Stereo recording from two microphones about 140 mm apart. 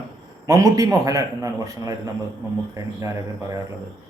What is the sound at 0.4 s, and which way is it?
A man's voice, 25° right (ahead or behind).